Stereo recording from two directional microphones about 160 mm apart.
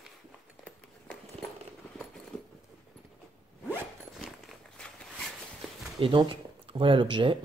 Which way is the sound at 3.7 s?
Centre (ahead or behind).